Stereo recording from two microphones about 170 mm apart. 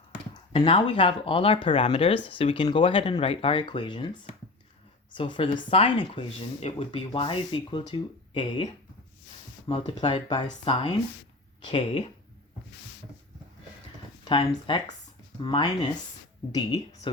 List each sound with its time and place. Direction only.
0.5 s speech: 30° left (ahead or behind)
5.1 s speech: 30° left (ahead or behind)
9.6 s speech: 35° left (ahead or behind)
14.3 s speech: 30° left (ahead or behind)